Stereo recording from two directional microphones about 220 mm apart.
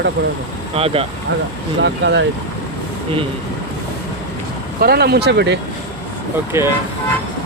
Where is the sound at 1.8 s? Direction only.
55° right (ahead or behind).